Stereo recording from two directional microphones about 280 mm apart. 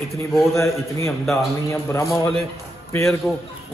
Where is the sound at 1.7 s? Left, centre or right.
Centre.